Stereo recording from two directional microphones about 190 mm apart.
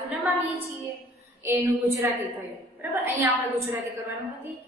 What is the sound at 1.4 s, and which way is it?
A woman's voice, 10° right (ahead or behind).